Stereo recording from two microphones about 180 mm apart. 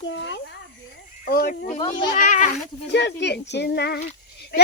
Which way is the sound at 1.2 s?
50° left (ahead or behind).